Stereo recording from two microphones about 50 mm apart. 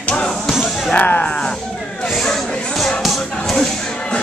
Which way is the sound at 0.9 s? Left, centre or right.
Left.